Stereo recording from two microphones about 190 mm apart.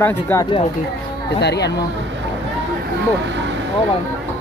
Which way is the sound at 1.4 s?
60° left (ahead or behind).